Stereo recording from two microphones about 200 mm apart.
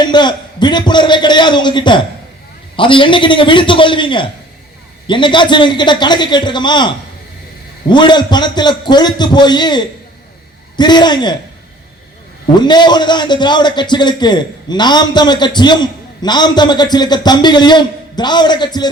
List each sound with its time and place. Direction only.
0.0 s a man's voice: 20° left (ahead or behind)
12.5 s a man's voice: 20° left (ahead or behind)